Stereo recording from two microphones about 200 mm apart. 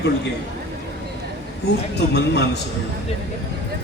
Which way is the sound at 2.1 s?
55° left (ahead or behind).